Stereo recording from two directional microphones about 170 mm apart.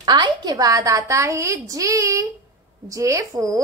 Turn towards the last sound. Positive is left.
turn(degrees=-20)  # may be behind; listen again after turning